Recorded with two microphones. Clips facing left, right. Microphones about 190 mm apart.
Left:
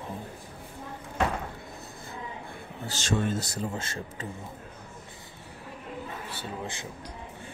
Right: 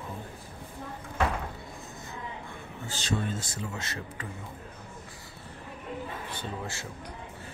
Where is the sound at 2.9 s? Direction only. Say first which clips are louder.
Left 2 dB; 90° left.